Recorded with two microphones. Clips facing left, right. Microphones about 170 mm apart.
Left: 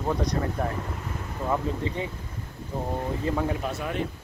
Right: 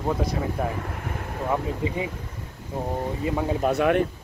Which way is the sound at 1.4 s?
15° right (ahead or behind).